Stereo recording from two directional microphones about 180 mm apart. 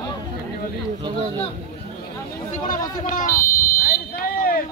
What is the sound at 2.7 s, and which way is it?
Speech, 45° left (ahead or behind).